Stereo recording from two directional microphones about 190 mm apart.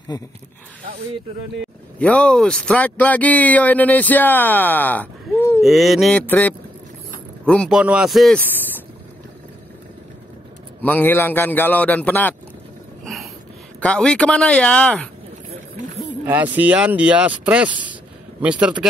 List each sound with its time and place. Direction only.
0.1 s speech: 20° left (ahead or behind)
2.0 s speech: 5° left (ahead or behind)
5.6 s speech: centre (ahead or behind)
10.8 s speech: 10° left (ahead or behind)
13.0 s a sound: centre (ahead or behind)
13.7 s speech: 5° left (ahead or behind)
16.3 s speech: 10° right (ahead or behind)